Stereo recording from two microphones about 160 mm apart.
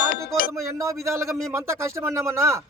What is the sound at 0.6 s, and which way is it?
Speech, 20° right (ahead or behind).